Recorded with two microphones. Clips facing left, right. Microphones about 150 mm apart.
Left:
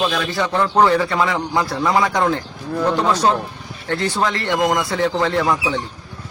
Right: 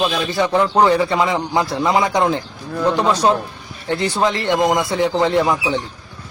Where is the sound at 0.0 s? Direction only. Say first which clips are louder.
Right 2 dB; 15° right (ahead or behind).